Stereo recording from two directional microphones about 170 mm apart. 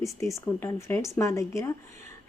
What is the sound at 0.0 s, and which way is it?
A woman's voice, 15° left (ahead or behind).